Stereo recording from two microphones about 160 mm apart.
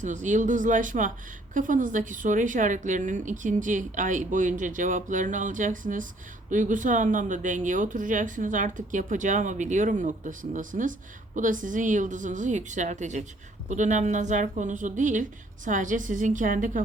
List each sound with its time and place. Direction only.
0.0 s a woman's voice: 50° right (ahead or behind)